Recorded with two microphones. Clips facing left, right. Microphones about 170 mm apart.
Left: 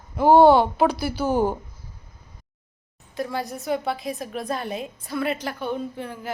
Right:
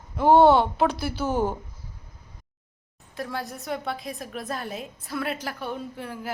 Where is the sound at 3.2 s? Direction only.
Centre (ahead or behind).